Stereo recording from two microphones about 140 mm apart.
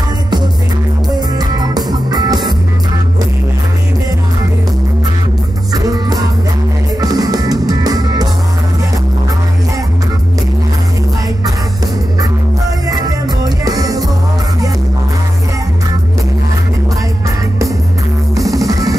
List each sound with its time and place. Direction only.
1.4 s music: 30° right (ahead or behind)
5.7 s music: 25° right (ahead or behind)
12.8 s music: 25° right (ahead or behind)
18.4 s music: centre (ahead or behind)
18.7 s music: 25° right (ahead or behind)